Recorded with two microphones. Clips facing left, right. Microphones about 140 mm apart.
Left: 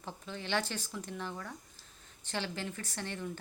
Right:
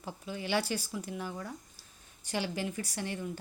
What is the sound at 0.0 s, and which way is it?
Speech, 10° right (ahead or behind).